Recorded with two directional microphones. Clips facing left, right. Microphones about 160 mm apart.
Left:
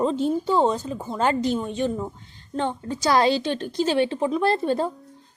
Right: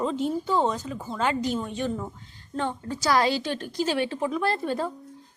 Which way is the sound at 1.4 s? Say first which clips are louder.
Left 4 dB; 20° left (ahead or behind).